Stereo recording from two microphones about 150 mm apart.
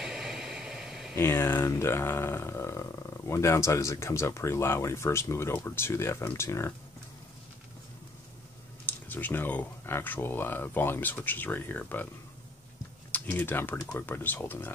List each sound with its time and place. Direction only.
0.0 s a sound: 5° right (ahead or behind)
1.1 s speech: 15° left (ahead or behind)
8.8 s speech: 10° left (ahead or behind)
13.1 s speech: 15° left (ahead or behind)